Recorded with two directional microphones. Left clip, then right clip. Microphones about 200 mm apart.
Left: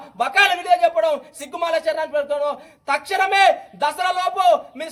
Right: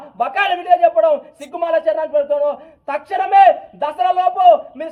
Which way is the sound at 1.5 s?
35° left (ahead or behind).